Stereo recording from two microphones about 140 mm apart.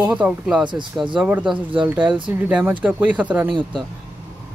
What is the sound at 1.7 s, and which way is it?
Speech, 35° right (ahead or behind).